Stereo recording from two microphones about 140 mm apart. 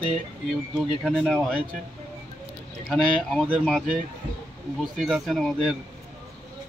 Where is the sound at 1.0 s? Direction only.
Centre (ahead or behind).